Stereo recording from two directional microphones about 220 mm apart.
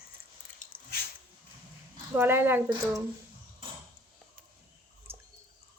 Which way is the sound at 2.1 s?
10° right (ahead or behind).